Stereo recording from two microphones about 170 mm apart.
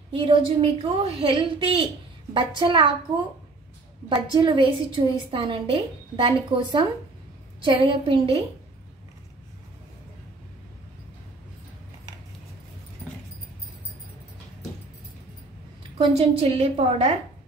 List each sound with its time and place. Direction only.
0.2 s a woman's voice: 35° right (ahead or behind)
16.1 s a woman's voice: 35° right (ahead or behind)